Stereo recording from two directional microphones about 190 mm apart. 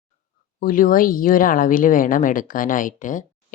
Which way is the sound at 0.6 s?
45° left (ahead or behind).